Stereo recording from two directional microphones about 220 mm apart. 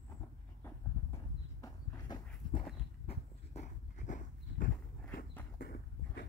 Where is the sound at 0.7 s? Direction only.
15° left (ahead or behind); by 4.6 s 35° left (ahead or behind).